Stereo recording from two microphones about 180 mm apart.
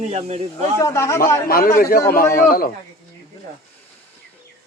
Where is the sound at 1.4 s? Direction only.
55° left (ahead or behind).